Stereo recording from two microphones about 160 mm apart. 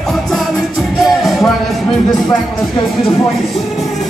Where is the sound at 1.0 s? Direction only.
Centre (ahead or behind).